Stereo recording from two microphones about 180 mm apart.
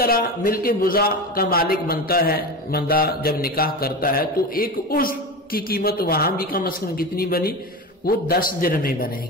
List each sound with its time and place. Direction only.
0.0 s a man's voice: 55° left (ahead or behind)